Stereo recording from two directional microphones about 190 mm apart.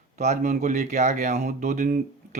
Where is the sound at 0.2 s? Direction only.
40° right (ahead or behind).